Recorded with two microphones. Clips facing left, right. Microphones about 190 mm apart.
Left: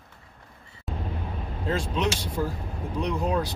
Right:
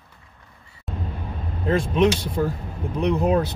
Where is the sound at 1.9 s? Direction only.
20° right (ahead or behind).